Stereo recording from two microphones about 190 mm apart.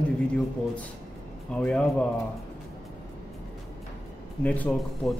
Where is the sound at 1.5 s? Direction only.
5° left (ahead or behind).